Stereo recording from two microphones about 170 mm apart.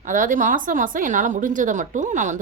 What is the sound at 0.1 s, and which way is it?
A woman's voice, 50° right (ahead or behind).